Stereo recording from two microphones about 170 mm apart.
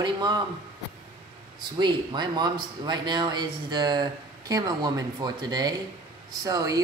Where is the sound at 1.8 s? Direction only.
25° right (ahead or behind).